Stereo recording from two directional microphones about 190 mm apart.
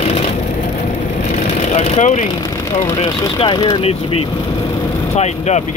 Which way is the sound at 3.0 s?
25° left (ahead or behind).